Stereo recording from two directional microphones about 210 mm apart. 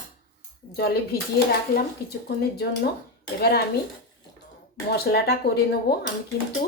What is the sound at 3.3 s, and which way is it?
Speech, 50° left (ahead or behind).